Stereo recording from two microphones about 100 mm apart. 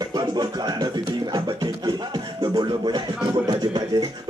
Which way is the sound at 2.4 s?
45° right (ahead or behind).